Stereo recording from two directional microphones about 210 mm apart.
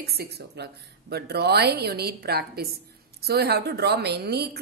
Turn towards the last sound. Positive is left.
turn(degrees=-50)  # may be behind; listen again after turning